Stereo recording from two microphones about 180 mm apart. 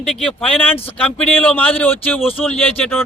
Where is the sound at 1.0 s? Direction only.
10° left (ahead or behind).